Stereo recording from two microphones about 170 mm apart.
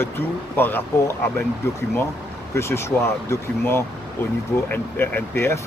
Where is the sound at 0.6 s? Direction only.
10° left (ahead or behind).